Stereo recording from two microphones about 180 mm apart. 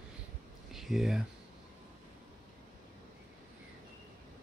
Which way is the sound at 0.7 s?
Centre (ahead or behind).